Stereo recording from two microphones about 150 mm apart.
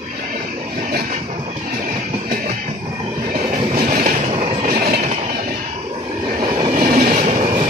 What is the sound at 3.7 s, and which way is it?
Train, 70° right (ahead or behind).